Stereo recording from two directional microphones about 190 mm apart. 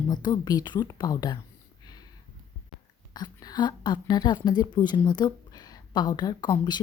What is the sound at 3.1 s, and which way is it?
A woman's voice, 20° left (ahead or behind).